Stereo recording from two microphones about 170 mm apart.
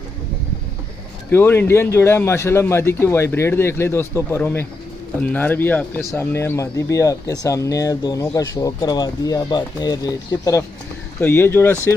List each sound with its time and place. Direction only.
1.3 s a man's voice: 15° left (ahead or behind)